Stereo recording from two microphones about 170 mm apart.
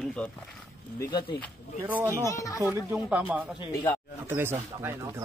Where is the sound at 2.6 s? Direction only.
10° right (ahead or behind).